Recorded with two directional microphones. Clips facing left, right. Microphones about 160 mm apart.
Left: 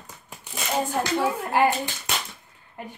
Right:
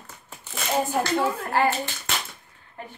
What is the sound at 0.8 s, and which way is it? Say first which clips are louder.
Speech: right 1 dB; 5° right (ahead or behind).